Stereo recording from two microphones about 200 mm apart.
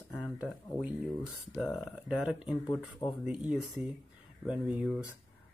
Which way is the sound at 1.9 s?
5° right (ahead or behind).